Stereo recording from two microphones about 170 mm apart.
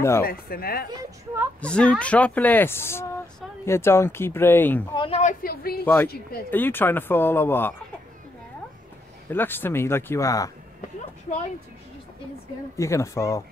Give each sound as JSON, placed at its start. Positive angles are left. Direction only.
{"t": 0.2, "sound": "speech", "side_deg": 60}
{"t": 0.8, "sound": "speech", "side_deg": -15}
{"t": 1.6, "sound": "speech", "side_deg": 5}
{"t": 4.9, "sound": "a woman's voice", "side_deg": 30}
{"t": 5.2, "sound": "speech", "side_deg": 60}
{"t": 6.5, "sound": "speech", "side_deg": 10}
{"t": 9.3, "sound": "speech", "side_deg": 10}
{"t": 11.0, "sound": "a sound", "side_deg": 45}
{"t": 12.7, "sound": "speech", "side_deg": 15}